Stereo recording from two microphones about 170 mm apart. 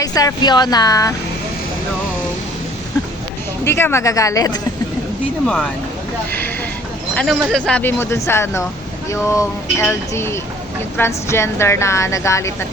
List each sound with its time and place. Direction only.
0.0 s speech: 20° left (ahead or behind)
3.6 s a woman's voice: 15° left (ahead or behind)
5.5 s speech: 5° left (ahead or behind)
7.2 s a woman's voice: 5° left (ahead or behind)